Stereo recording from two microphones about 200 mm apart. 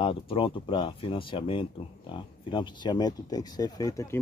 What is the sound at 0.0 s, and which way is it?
Speech, 25° left (ahead or behind).